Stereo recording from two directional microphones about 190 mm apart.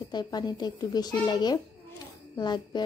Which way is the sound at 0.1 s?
20° left (ahead or behind).